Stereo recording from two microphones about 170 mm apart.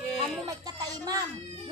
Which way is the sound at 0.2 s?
20° right (ahead or behind).